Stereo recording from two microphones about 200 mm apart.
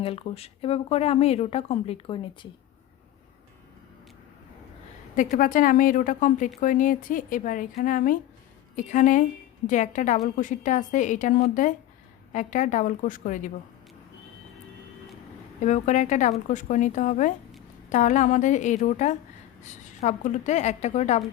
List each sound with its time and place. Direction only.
0.0 s speech: 30° left (ahead or behind)
5.1 s a woman's voice: 40° left (ahead or behind)
15.6 s a woman's voice: 35° left (ahead or behind)